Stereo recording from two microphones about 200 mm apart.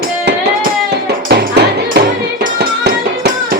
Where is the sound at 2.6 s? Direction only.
55° right (ahead or behind).